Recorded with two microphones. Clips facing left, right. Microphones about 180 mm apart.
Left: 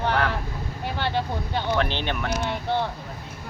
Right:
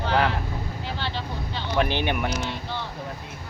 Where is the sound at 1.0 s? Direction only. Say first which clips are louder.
Left 8 dB; 55° left (ahead or behind).